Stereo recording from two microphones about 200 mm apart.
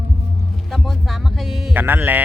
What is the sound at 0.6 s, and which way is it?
Speech, centre (ahead or behind).